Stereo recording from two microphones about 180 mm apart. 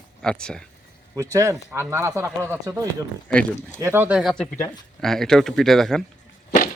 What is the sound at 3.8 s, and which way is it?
Speech, 10° right (ahead or behind).